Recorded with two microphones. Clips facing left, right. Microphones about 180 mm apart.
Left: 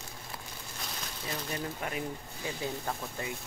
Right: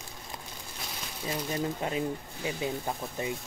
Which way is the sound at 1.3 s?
25° right (ahead or behind).